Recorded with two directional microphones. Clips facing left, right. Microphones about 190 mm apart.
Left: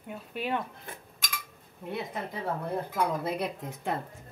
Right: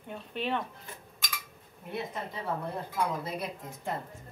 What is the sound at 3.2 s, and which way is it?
Speech, 65° left (ahead or behind).